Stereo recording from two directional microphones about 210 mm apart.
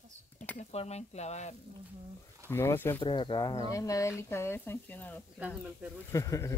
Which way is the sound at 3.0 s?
20° left (ahead or behind).